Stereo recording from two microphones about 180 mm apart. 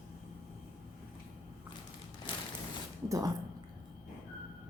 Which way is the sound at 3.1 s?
20° right (ahead or behind).